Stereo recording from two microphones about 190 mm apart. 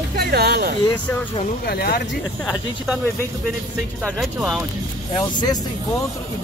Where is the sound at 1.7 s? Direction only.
55° left (ahead or behind).